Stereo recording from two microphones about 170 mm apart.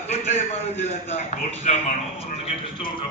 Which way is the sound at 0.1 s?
40° left (ahead or behind).